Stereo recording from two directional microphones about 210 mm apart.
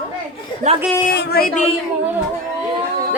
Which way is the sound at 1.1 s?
50° left (ahead or behind).